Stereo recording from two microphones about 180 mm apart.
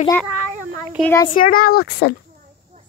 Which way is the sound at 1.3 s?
55° left (ahead or behind).